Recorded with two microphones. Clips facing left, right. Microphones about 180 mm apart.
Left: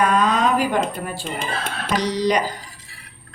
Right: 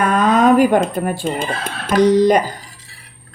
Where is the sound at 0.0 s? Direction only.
50° right (ahead or behind).